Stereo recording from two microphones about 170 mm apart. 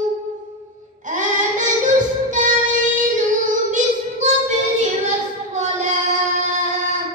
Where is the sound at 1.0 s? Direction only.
50° right (ahead or behind).